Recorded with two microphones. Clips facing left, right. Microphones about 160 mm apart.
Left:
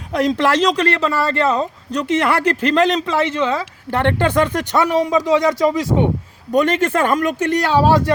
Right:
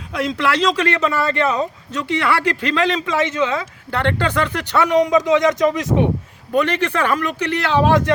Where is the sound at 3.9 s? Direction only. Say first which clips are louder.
Left 3 dB; 20° left (ahead or behind).